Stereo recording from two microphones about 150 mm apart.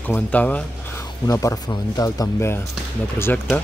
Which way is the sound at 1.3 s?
20° left (ahead or behind).